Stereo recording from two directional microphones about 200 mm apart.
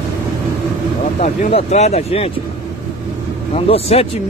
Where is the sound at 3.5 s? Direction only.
30° left (ahead or behind).